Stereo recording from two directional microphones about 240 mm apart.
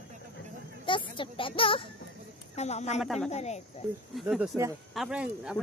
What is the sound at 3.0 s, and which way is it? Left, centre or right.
Speech, centre.